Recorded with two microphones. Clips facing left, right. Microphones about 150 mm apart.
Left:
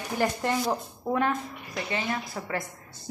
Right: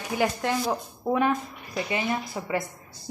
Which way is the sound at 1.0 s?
15° right (ahead or behind).